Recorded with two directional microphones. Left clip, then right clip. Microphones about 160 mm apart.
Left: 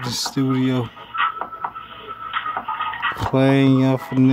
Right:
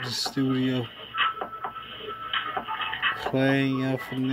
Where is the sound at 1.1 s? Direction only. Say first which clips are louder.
Left 5 dB; 25° right (ahead or behind).